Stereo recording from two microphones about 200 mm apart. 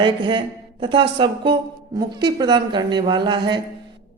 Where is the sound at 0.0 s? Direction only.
25° right (ahead or behind).